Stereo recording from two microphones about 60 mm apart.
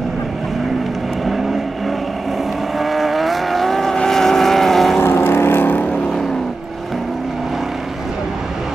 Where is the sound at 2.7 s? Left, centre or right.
Centre.